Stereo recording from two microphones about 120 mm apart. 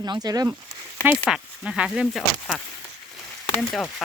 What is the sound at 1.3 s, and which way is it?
Speech, 10° right (ahead or behind).